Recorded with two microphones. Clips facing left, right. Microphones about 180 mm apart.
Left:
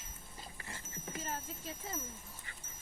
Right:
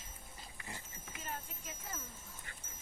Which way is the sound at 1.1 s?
35° left (ahead or behind).